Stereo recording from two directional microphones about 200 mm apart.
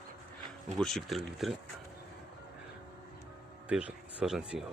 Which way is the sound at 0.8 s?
Centre (ahead or behind).